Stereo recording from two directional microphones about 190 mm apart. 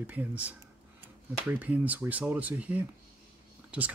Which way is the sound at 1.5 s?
10° right (ahead or behind).